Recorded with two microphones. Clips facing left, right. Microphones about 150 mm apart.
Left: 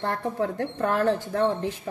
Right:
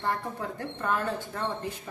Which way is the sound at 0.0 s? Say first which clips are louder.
Left 5 dB; 70° left (ahead or behind).